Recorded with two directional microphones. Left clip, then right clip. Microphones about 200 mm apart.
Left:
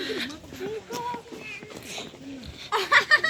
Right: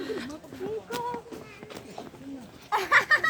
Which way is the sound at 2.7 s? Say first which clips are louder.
Left 2 dB; 70° right (ahead or behind).